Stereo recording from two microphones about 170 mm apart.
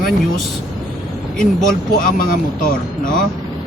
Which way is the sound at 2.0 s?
55° left (ahead or behind).